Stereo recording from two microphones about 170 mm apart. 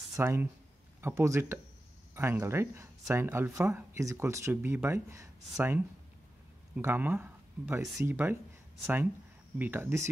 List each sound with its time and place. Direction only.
0.1 s speech: 15° right (ahead or behind)